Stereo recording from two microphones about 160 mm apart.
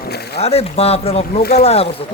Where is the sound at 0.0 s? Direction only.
90° left.